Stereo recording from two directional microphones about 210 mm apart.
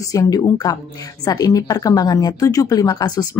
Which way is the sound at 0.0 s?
15° left (ahead or behind).